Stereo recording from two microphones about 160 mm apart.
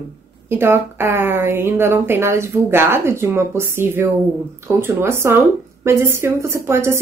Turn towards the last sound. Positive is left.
turn(degrees=-15)  # may be behind; listen again after turning